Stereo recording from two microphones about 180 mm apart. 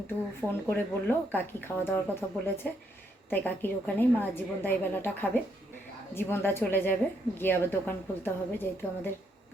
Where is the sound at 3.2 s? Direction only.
10° left (ahead or behind).